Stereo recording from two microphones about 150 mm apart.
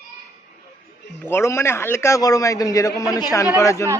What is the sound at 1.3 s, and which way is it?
A man's voice, 15° left (ahead or behind).